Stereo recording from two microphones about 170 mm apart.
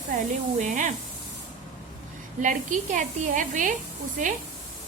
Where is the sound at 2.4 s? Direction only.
50° right (ahead or behind).